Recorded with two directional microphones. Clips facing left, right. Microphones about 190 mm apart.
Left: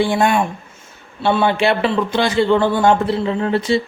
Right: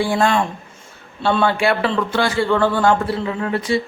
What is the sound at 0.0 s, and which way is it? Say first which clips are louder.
A man's voice: left 2 dB; 20° left (ahead or behind).